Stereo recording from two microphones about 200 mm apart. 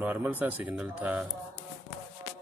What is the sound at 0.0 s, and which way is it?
Speech, 10° right (ahead or behind).